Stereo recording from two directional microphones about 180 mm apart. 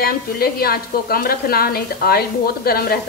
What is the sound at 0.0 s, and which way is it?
Speech, 55° left (ahead or behind).